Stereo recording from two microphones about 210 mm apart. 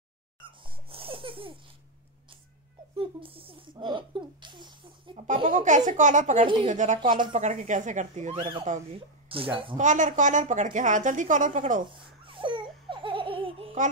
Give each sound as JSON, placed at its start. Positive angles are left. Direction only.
{"t": 0.4, "sound": "laughter", "side_deg": -25}
{"t": 3.0, "sound": "a sound", "side_deg": -25}
{"t": 5.9, "sound": "a woman's voice", "side_deg": -35}
{"t": 6.4, "sound": "speech", "side_deg": -25}
{"t": 6.7, "sound": "a woman's voice", "side_deg": -35}
{"t": 8.4, "sound": "a woman's voice", "side_deg": -25}
{"t": 11.8, "sound": "laughter", "side_deg": -25}